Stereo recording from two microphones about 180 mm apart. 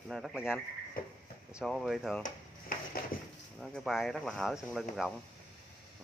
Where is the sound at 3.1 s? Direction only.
50° left (ahead or behind).